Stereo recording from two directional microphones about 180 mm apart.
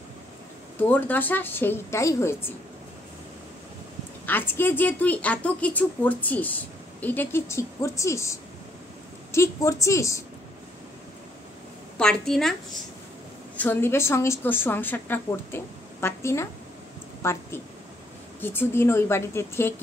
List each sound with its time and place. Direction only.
0.7 s a woman's voice: 10° left (ahead or behind)
4.3 s a woman's voice: 10° left (ahead or behind)
12.0 s a woman's voice: centre (ahead or behind)
13.6 s a woman's voice: 10° left (ahead or behind)
17.2 s a sound: 15° left (ahead or behind)
18.4 s a woman's voice: 10° left (ahead or behind)